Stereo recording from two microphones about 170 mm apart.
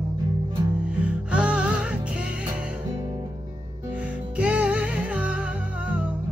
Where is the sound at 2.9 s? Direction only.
25° right (ahead or behind).